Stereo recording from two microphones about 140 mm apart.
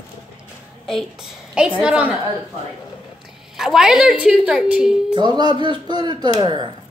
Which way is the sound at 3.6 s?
5° right (ahead or behind).